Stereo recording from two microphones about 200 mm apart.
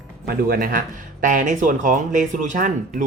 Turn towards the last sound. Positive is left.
turn(degrees=-40)  # may be behind; listen again after turning